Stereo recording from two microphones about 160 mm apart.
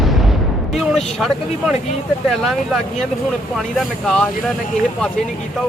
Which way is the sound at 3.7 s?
5° left (ahead or behind).